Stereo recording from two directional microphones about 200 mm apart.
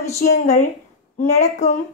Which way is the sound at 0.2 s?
40° left (ahead or behind).